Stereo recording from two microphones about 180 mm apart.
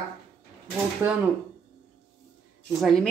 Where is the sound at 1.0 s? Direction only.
10° right (ahead or behind).